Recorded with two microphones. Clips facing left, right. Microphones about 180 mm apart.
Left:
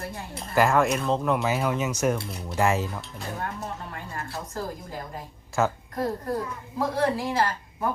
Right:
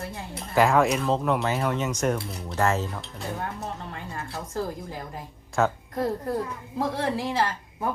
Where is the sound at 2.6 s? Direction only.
10° left (ahead or behind).